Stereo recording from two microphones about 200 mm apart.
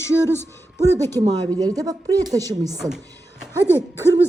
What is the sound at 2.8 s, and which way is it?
Speech, centre (ahead or behind).